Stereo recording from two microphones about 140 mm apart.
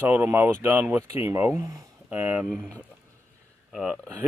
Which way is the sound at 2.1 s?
10° right (ahead or behind).